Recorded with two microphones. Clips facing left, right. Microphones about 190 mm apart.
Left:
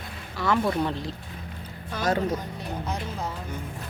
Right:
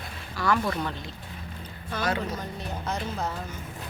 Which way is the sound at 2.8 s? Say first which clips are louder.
Right 4 dB; 10° left (ahead or behind).